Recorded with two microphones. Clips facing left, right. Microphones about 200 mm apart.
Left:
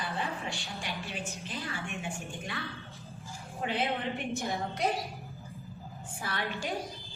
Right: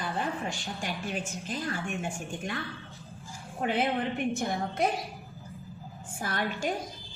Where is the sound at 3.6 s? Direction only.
55° right (ahead or behind).